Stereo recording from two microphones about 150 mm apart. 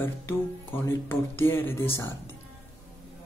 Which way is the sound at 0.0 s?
15° left (ahead or behind).